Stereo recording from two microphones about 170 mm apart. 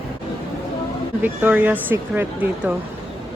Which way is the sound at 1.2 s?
10° right (ahead or behind).